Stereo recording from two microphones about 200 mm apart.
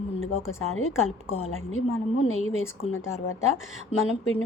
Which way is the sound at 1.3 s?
30° left (ahead or behind).